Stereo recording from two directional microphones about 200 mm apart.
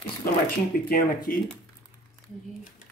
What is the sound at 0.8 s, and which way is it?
Speech, 45° left (ahead or behind).